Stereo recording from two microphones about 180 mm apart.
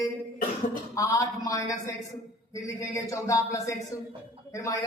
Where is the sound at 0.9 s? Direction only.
20° left (ahead or behind).